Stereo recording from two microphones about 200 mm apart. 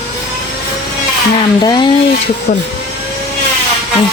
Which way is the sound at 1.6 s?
20° left (ahead or behind).